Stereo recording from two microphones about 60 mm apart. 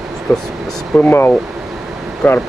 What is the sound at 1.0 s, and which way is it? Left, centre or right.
Speech, left.